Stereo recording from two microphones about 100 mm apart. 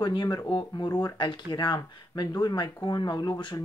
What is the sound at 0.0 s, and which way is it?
Speech, 45° left (ahead or behind).